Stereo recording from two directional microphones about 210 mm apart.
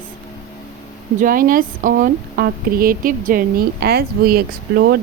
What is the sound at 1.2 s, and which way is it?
Speech, 40° right (ahead or behind).